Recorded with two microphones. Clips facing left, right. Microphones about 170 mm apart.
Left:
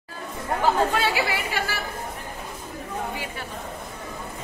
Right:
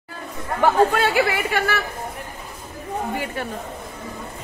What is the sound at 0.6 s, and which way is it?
Speech, 50° right (ahead or behind).